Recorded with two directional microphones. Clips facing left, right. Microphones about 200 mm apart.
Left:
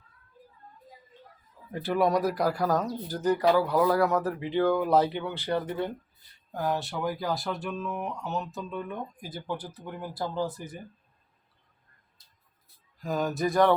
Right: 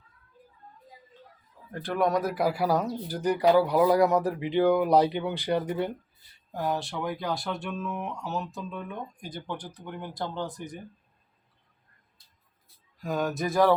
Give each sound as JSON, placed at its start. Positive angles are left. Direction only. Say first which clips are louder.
{"t": 1.7, "sound": "speech", "louder": "left 1 dB", "side_deg": 5}
{"t": 6.5, "sound": "speech", "louder": "even", "side_deg": 0}
{"t": 13.0, "sound": "speech", "louder": "left 1 dB", "side_deg": 0}